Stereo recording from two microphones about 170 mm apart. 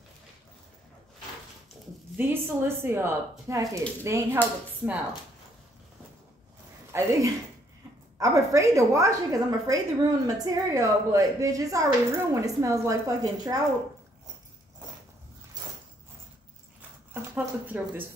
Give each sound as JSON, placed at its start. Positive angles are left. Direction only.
{"t": 2.1, "sound": "speech", "side_deg": -15}
{"t": 6.9, "sound": "a woman's voice", "side_deg": -20}
{"t": 17.1, "sound": "speech", "side_deg": -10}